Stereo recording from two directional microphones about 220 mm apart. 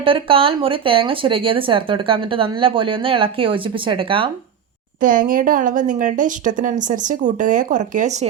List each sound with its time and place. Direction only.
0.0 s speech: 25° right (ahead or behind)
4.9 s speech: 40° right (ahead or behind)